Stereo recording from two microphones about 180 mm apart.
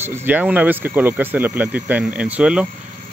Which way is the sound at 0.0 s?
10° right (ahead or behind).